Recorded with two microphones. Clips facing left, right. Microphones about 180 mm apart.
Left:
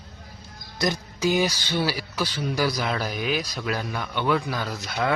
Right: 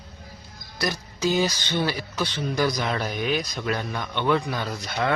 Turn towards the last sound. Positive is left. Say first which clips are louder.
# even
turn(degrees=0)  # may be behind; listen again after turning